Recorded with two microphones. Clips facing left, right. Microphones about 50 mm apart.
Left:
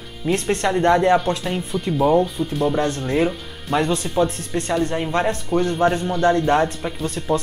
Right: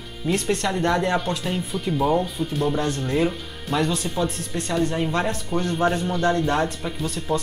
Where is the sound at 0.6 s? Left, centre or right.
Left.